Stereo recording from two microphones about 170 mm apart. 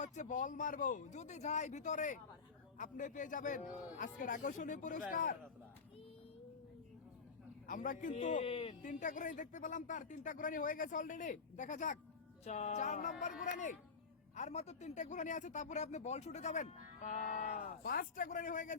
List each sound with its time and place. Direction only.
0.0 s speech: 45° left (ahead or behind)
7.7 s speech: 50° left (ahead or behind)
8.4 s speech: 35° left (ahead or behind)
8.8 s speech: 50° left (ahead or behind)